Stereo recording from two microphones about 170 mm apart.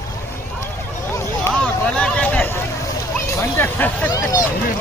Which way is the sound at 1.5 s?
5° left (ahead or behind).